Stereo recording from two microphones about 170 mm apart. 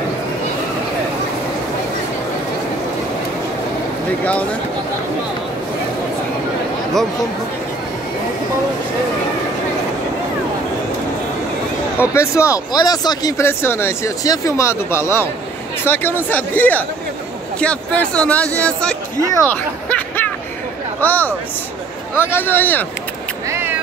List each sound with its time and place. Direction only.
4.2 s speech: 10° left (ahead or behind)
12.1 s speech: 15° left (ahead or behind)
23.5 s cat: 15° right (ahead or behind)